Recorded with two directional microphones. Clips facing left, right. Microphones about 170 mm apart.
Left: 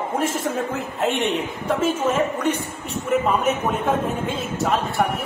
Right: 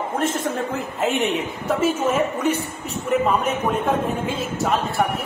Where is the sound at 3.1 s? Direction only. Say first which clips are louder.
Even; centre (ahead or behind).